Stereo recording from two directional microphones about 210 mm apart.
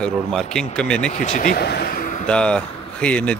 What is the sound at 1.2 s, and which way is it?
Speech, 35° left (ahead or behind).